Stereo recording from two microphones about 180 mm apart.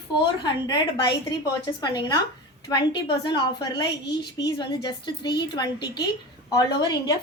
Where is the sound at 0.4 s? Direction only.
25° left (ahead or behind).